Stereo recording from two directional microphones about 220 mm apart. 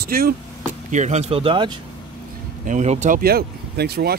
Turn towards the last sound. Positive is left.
turn(degrees=-45)  # may be behind; listen again after turning